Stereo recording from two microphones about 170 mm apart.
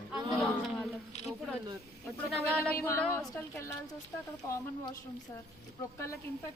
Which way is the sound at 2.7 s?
15° left (ahead or behind).